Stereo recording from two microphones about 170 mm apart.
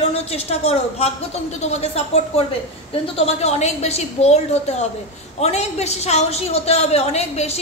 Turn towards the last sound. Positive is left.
turn(degrees=40)  # may be behind; listen again after turning